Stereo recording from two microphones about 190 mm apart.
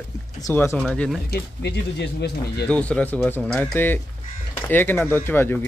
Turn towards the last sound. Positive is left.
turn(degrees=10)  # may be behind; listen again after turning